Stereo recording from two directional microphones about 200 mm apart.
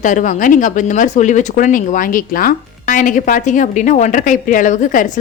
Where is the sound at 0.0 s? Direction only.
40° left (ahead or behind).